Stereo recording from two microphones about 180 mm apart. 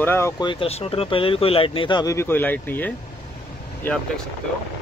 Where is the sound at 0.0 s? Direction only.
10° left (ahead or behind).